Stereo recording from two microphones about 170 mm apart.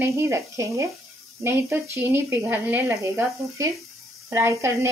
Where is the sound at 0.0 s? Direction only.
15° right (ahead or behind).